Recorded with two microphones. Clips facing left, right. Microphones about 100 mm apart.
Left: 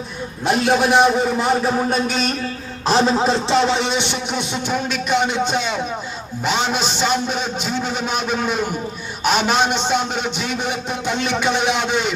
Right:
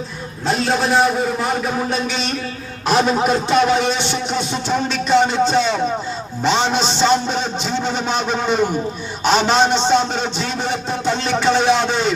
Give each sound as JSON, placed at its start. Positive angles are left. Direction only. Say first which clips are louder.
{"t": 0.4, "sound": "a man's voice", "louder": "left 2 dB", "side_deg": 15}
{"t": 1.9, "sound": "a sound", "louder": "left 2 dB", "side_deg": 45}
{"t": 2.8, "sound": "a man's voice", "louder": "even", "side_deg": 30}